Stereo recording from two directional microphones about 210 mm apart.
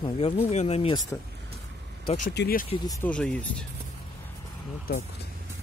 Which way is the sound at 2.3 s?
45° left (ahead or behind).